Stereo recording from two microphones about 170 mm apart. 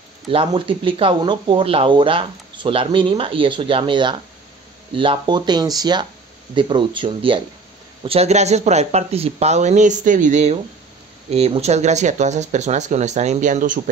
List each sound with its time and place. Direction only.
0.3 s speech: 30° right (ahead or behind); by 13.7 s 50° right (ahead or behind)